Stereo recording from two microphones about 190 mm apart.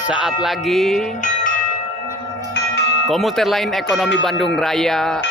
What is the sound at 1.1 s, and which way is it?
Chime, 40° left (ahead or behind).